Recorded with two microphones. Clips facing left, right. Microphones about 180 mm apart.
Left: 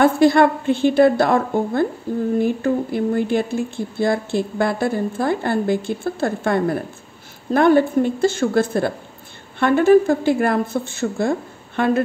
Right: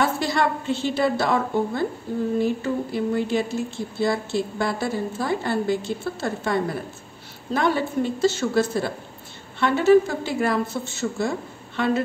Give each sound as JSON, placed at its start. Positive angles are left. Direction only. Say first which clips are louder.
{"t": 0.0, "sound": "a woman's voice", "louder": "left 9 dB", "side_deg": 55}